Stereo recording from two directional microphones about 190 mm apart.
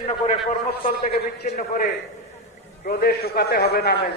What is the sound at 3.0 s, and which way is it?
Speech, 55° left (ahead or behind).